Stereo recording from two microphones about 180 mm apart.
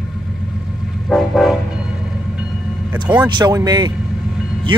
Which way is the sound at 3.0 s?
25° right (ahead or behind).